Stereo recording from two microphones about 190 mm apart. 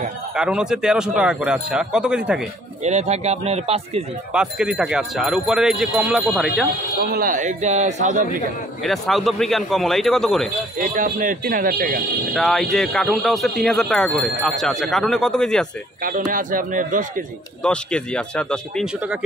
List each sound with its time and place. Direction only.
0.4 s speech: 5° right (ahead or behind)
2.8 s a man's voice: 35° right (ahead or behind)
4.3 s speech: 5° right (ahead or behind)
7.0 s a man's voice: 55° right (ahead or behind)
8.8 s speech: centre (ahead or behind)
10.8 s speech: 45° right (ahead or behind)
12.4 s speech: centre (ahead or behind)
16.0 s speech: 45° right (ahead or behind)
17.6 s speech: 5° left (ahead or behind)